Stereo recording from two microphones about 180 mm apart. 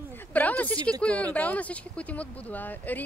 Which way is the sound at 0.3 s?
10° left (ahead or behind).